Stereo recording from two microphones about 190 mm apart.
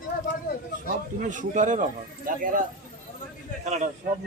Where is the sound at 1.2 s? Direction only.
40° right (ahead or behind).